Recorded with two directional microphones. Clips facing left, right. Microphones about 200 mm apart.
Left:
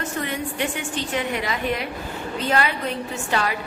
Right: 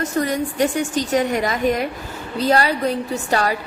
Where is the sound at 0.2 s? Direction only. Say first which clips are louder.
Right 8 dB; 40° right (ahead or behind).